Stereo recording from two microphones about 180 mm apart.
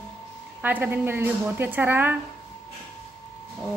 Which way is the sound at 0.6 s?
10° right (ahead or behind).